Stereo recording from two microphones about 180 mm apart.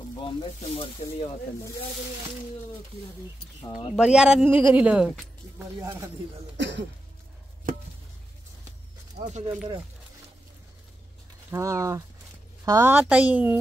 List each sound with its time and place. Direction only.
0.2 s speech: 30° left (ahead or behind)
3.9 s speech: 5° right (ahead or behind)
5.6 s a woman's voice: 15° right (ahead or behind)
6.5 s throat clearing: 80° right
9.1 s speech: 40° right (ahead or behind)
11.5 s a woman's voice: 15° right (ahead or behind)